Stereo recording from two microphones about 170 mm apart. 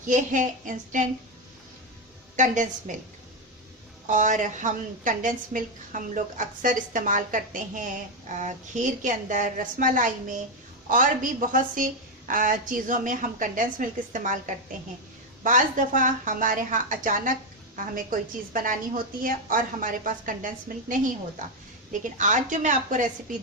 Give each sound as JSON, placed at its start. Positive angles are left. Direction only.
{"t": 0.0, "sound": "a woman's voice", "side_deg": -50}
{"t": 2.3, "sound": "a woman's voice", "side_deg": -45}
{"t": 4.0, "sound": "a woman's voice", "side_deg": -50}
{"t": 15.4, "sound": "a woman's voice", "side_deg": -50}